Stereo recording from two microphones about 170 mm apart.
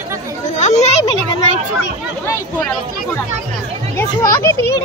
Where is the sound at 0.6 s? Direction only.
45° left (ahead or behind).